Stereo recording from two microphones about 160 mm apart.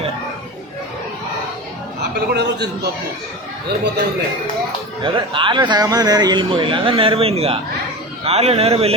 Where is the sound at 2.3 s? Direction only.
90° right.